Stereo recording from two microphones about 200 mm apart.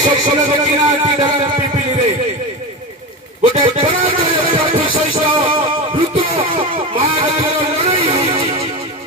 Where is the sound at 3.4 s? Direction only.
25° right (ahead or behind).